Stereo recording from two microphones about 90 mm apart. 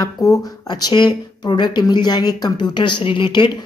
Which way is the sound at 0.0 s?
40° left (ahead or behind).